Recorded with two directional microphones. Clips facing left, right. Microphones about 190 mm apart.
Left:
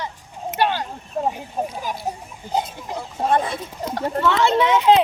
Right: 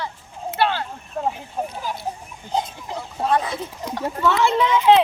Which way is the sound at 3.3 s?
25° left (ahead or behind).